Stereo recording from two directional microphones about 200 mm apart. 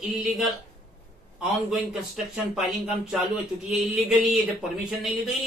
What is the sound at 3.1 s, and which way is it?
Speech, centre (ahead or behind).